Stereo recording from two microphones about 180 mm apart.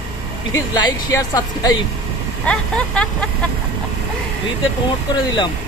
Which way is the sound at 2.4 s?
5° left (ahead or behind).